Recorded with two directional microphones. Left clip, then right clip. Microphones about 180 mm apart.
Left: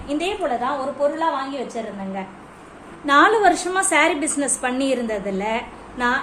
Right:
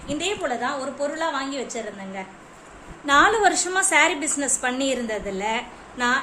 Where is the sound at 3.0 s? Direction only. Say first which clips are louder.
Left 3 dB; centre (ahead or behind).